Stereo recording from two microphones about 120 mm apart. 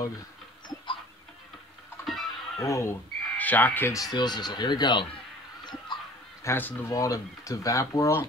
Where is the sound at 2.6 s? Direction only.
25° left (ahead or behind).